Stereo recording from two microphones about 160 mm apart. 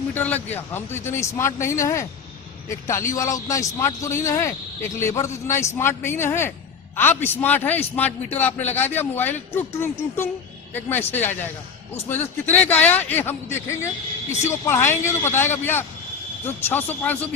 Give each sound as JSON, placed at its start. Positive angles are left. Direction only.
{"t": 0.1, "sound": "a man's voice", "side_deg": 10}